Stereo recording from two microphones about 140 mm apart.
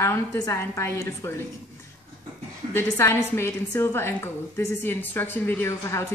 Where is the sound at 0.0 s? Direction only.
15° left (ahead or behind).